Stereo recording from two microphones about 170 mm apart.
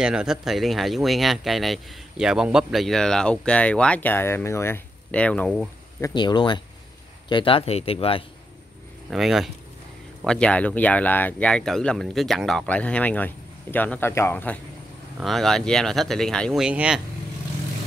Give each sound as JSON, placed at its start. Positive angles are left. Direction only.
{"t": 0.0, "sound": "speech", "side_deg": -5}
{"t": 5.9, "sound": "speech", "side_deg": 20}
{"t": 9.1, "sound": "speech", "side_deg": 0}